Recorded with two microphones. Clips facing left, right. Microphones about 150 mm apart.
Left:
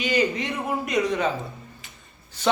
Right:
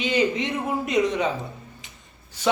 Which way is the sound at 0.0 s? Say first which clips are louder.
Right 1 dB; 25° right (ahead or behind).